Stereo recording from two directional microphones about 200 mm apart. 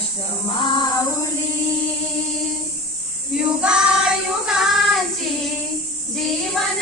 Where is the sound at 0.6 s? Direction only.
20° left (ahead or behind).